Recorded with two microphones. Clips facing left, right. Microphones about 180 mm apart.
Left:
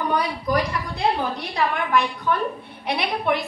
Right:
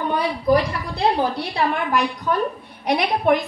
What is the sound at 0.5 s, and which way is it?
A woman's voice, 30° right (ahead or behind).